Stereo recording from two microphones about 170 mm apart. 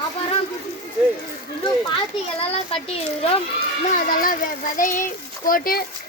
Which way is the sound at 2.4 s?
35° left (ahead or behind).